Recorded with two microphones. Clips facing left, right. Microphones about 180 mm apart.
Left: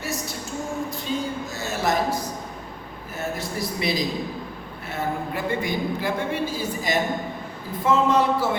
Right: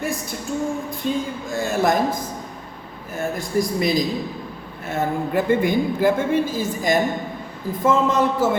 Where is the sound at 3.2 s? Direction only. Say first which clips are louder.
Right 6 dB; 45° right (ahead or behind).